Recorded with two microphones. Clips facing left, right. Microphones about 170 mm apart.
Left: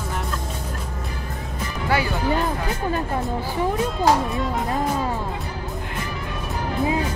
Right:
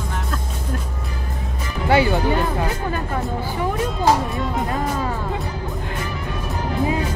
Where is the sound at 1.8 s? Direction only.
25° right (ahead or behind).